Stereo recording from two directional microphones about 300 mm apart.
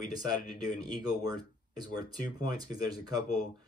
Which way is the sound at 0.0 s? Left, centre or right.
Left.